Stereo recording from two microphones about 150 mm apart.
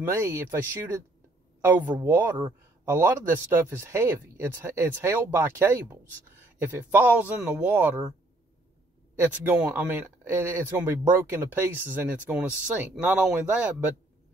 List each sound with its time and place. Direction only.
0.0 s speech: 15° right (ahead or behind)
9.2 s speech: 15° right (ahead or behind)